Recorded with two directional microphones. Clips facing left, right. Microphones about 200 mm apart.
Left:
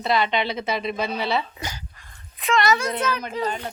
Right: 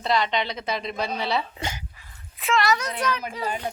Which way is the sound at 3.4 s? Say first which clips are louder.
Left 2 dB; 10° right (ahead or behind).